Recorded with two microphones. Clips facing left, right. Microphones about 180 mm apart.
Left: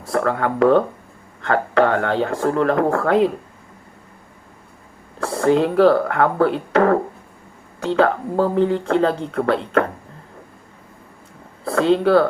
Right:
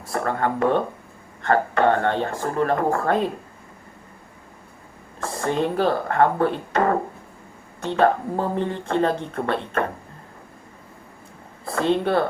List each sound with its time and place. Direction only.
0.1 s speech: 75° left (ahead or behind)
5.2 s speech: 75° left (ahead or behind)
11.6 s speech: 90° left